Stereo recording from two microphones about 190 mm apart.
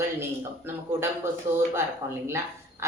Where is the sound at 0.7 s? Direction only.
10° right (ahead or behind).